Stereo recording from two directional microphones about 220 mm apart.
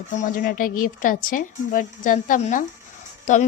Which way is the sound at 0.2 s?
35° left (ahead or behind).